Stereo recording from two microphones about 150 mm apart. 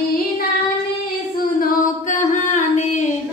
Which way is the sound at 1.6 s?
55° left (ahead or behind).